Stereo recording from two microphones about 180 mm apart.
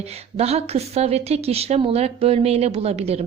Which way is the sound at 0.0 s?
35° right (ahead or behind).